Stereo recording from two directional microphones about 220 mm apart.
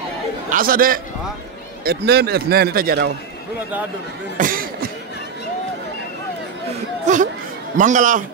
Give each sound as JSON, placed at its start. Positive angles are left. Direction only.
{"t": 0.5, "sound": "a man's voice", "side_deg": -40}
{"t": 4.4, "sound": "beatboxing", "side_deg": -40}
{"t": 7.1, "sound": "a man's voice", "side_deg": -35}